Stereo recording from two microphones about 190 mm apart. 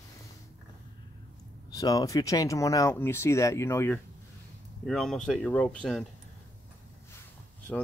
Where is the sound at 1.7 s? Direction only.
20° left (ahead or behind); by 6.1 s 5° left (ahead or behind).